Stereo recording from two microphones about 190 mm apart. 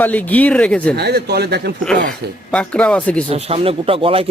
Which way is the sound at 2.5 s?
5° left (ahead or behind).